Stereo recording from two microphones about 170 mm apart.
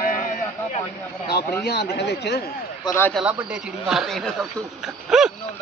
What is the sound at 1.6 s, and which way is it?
Speech, 75° left (ahead or behind).